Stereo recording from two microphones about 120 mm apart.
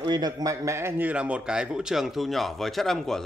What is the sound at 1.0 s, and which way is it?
Speech, 10° right (ahead or behind).